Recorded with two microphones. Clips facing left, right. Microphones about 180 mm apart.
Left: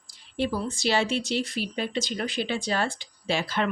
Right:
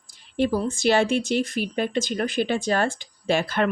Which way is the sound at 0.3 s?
50° right (ahead or behind).